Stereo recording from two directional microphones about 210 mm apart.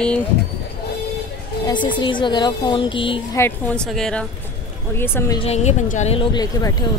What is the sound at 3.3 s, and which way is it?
Speech, 10° left (ahead or behind).